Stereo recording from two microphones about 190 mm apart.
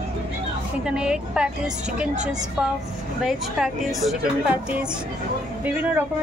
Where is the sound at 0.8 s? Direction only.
5° right (ahead or behind).